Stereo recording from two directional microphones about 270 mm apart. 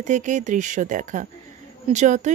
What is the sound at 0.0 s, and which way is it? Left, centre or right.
Speech, right.